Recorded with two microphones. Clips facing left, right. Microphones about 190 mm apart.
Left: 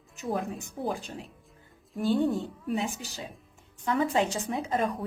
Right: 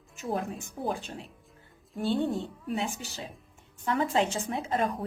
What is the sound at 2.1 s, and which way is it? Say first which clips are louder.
Speech: left 3 dB; centre (ahead or behind).